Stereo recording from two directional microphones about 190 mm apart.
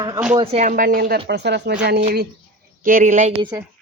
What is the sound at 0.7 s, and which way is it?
Speech, 50° right (ahead or behind).